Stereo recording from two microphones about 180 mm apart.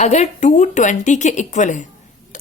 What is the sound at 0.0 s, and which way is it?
A woman's voice, 40° left (ahead or behind).